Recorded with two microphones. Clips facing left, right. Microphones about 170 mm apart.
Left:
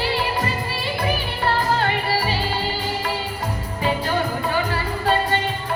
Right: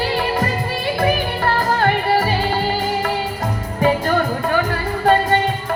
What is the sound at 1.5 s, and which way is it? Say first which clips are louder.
Music: right 5 dB; 45° right (ahead or behind).